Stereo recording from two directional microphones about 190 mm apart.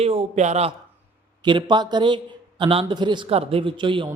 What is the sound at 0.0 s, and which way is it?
Speech, 35° right (ahead or behind).